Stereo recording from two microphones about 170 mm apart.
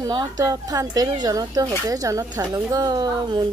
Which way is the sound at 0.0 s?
25° right (ahead or behind).